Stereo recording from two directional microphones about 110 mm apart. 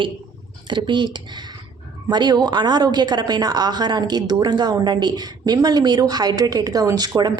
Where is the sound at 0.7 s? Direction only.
45° right (ahead or behind).